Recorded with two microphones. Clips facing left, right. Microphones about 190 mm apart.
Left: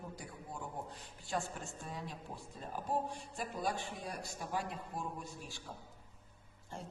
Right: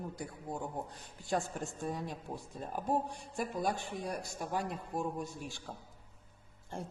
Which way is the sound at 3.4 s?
50° right (ahead or behind).